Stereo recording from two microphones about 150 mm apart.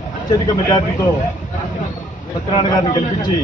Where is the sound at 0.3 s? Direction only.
30° left (ahead or behind).